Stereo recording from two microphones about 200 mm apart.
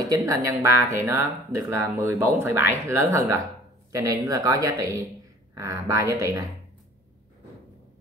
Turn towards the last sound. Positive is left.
turn(degrees=-15)  # may be behind; listen again after turning